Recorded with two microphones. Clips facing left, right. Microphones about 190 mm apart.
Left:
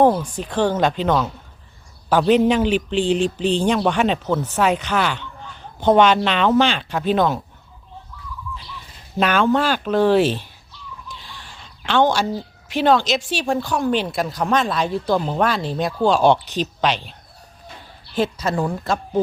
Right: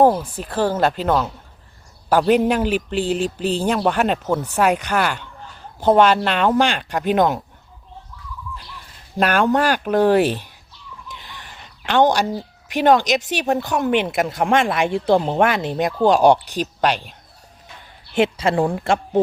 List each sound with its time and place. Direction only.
0.0 s a man's voice: 5° right (ahead or behind)
9.1 s a man's voice: 10° right (ahead or behind)
11.8 s a woman's voice: 15° right (ahead or behind)
18.1 s speech: 25° right (ahead or behind)